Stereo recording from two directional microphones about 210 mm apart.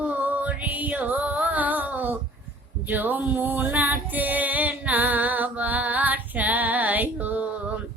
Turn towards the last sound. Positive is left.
turn(degrees=-10)  # may be behind; listen again after turning